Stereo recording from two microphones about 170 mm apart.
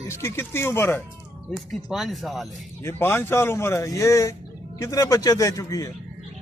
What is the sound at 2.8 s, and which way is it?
Speech, 15° left (ahead or behind).